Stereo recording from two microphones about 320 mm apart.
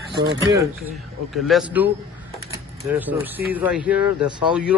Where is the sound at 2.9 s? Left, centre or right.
Centre.